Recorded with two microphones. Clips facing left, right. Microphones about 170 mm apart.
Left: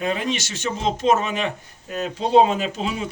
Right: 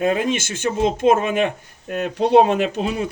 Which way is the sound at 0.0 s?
50° right (ahead or behind).